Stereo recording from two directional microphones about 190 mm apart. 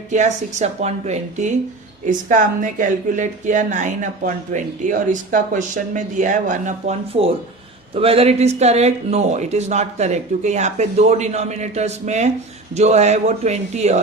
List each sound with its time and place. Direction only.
0.1 s speech: 40° right (ahead or behind)